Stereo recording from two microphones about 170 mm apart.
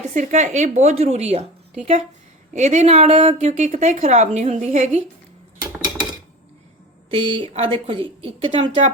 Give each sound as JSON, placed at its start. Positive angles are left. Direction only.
{"t": 0.0, "sound": "a woman's voice", "side_deg": -45}
{"t": 3.5, "sound": "a woman's voice", "side_deg": -45}
{"t": 7.1, "sound": "a woman's voice", "side_deg": -30}